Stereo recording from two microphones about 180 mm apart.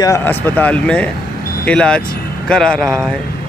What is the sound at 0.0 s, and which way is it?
Speech, 15° left (ahead or behind).